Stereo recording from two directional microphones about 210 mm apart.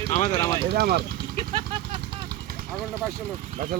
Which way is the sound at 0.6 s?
50° right (ahead or behind).